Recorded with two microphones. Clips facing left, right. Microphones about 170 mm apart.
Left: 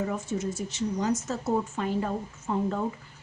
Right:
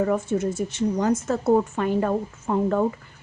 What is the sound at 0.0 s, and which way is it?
A woman's voice, 55° right (ahead or behind).